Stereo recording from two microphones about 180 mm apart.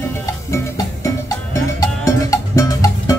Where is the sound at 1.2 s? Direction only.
20° left (ahead or behind).